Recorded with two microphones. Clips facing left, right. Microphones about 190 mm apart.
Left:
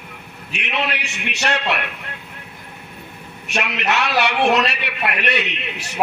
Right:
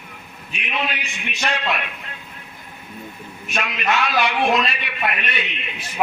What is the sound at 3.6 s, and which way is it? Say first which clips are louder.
A man's voice: left 1 dB; 75° left (ahead or behind).